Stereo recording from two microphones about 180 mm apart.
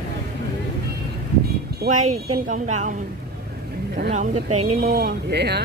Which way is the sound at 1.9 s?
40° right (ahead or behind).